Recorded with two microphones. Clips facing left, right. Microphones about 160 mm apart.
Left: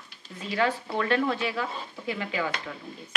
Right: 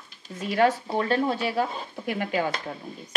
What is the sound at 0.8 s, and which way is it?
Speech, 30° right (ahead or behind).